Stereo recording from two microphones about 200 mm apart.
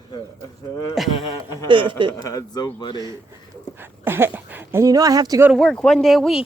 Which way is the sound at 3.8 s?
10° right (ahead or behind).